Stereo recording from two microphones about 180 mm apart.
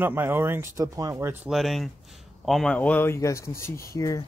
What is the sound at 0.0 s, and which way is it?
Speech, 10° right (ahead or behind).